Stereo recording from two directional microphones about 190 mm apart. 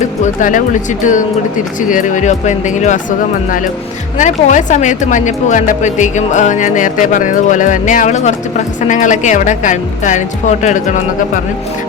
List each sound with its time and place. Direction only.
0.3 s speech: 40° left (ahead or behind)